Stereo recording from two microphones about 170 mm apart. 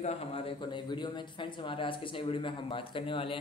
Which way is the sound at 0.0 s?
35° left (ahead or behind).